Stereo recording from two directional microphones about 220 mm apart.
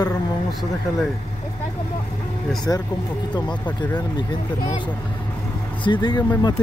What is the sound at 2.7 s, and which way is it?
Speech, 15° left (ahead or behind).